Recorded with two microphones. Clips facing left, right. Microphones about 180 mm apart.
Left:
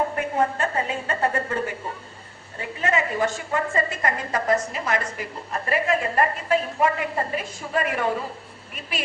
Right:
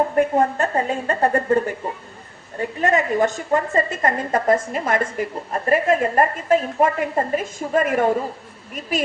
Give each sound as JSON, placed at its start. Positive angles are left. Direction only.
{"t": 0.2, "sound": "a woman's voice", "side_deg": -40}